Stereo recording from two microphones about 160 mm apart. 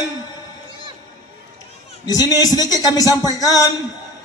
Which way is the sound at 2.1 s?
25° left (ahead or behind).